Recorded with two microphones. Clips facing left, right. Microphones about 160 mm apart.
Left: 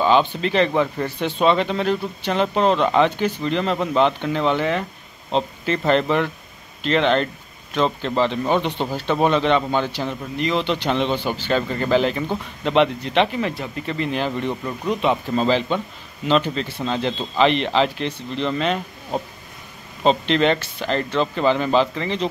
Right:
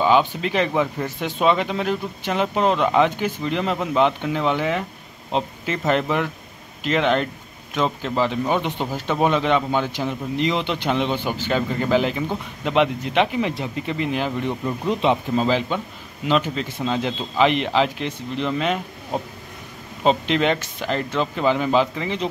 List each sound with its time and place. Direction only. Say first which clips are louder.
0.0 s speech: left 1 dB; 10° right (ahead or behind)
14.9 s speech: even; 25° right (ahead or behind)
15.3 s speech: left 1 dB; 10° right (ahead or behind)